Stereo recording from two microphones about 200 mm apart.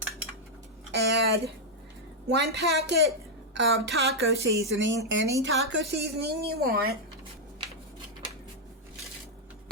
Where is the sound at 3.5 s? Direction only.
65° right (ahead or behind).